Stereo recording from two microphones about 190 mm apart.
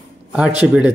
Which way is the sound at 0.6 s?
5° right (ahead or behind).